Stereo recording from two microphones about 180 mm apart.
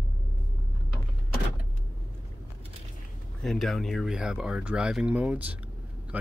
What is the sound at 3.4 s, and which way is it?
Speech, centre (ahead or behind).